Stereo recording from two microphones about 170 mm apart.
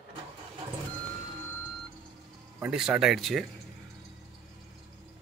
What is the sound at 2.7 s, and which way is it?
Speech, 5° right (ahead or behind).